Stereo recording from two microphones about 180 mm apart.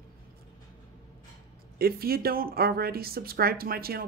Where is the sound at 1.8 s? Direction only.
55° right (ahead or behind).